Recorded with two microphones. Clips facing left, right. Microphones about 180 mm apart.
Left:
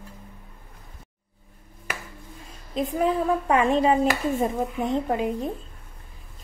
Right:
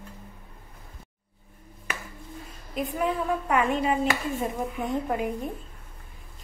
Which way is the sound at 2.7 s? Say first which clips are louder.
Left 4 dB; 30° left (ahead or behind).